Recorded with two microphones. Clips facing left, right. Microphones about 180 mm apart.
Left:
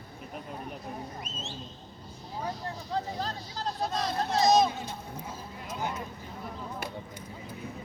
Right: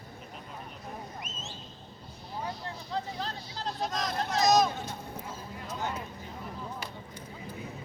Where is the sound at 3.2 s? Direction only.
35° left (ahead or behind).